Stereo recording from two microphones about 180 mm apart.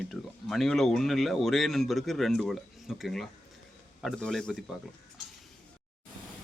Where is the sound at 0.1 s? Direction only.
Centre (ahead or behind).